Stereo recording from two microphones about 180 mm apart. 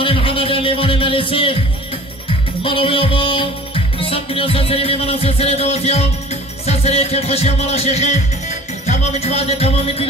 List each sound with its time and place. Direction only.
0.0 s music: 30° left (ahead or behind)
2.6 s music: 30° left (ahead or behind)